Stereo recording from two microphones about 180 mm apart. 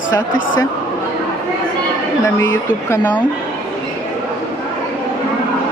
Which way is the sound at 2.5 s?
10° left (ahead or behind).